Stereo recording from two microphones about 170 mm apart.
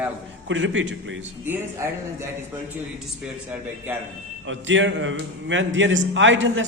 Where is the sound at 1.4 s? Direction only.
15° right (ahead or behind).